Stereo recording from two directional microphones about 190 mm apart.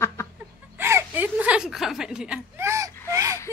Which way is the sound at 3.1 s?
15° right (ahead or behind).